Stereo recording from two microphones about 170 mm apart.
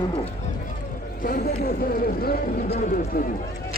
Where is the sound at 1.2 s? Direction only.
55° left (ahead or behind).